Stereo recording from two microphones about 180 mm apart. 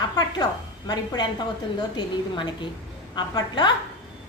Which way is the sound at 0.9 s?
25° left (ahead or behind).